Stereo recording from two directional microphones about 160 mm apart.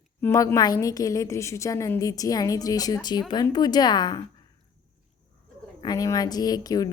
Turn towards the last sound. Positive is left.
turn(degrees=25)  # may be behind; listen again after turning